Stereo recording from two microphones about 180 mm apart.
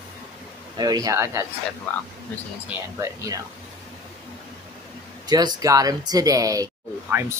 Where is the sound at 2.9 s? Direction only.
20° right (ahead or behind).